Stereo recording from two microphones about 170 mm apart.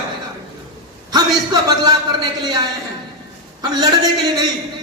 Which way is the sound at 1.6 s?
25° right (ahead or behind).